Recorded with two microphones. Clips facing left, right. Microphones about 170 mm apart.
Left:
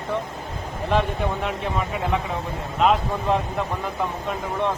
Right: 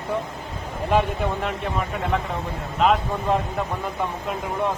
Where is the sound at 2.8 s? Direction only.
Centre (ahead or behind).